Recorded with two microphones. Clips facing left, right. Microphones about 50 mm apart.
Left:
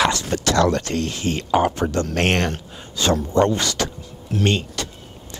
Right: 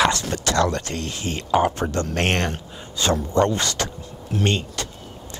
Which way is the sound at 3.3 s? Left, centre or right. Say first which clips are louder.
Left 2 dB; left.